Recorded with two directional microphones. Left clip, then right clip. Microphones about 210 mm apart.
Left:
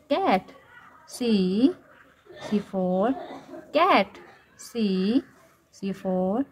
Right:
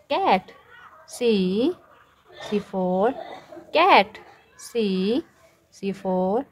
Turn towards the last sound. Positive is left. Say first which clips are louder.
# right 3 dB
turn(degrees=-15)  # may be behind; listen again after turning